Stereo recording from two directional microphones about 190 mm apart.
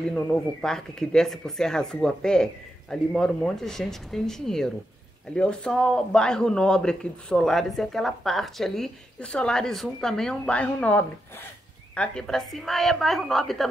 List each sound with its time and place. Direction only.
0.1 s a man's voice: 5° left (ahead or behind)